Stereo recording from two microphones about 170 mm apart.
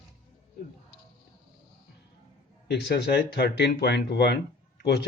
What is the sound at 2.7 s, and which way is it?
Speech, 75° left (ahead or behind).